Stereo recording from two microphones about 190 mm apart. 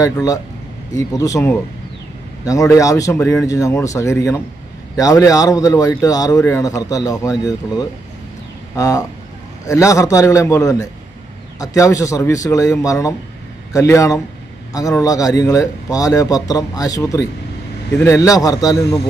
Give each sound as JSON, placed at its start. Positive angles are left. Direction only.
{"t": 0.0, "sound": "a man's voice", "side_deg": 15}